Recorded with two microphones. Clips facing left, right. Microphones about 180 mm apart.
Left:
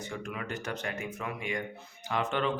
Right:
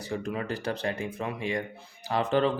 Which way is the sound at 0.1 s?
35° right (ahead or behind).